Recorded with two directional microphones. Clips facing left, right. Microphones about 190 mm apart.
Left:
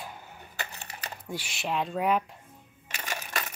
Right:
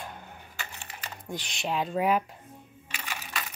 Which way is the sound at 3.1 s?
45° left (ahead or behind).